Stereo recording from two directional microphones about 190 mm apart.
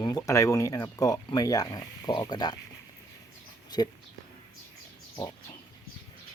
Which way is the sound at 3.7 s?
20° left (ahead or behind).